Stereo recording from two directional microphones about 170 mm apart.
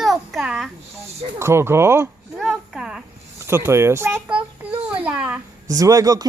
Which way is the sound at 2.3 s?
Centre (ahead or behind).